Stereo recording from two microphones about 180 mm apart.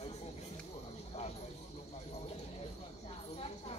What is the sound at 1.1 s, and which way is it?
Clip-clop, 35° left (ahead or behind).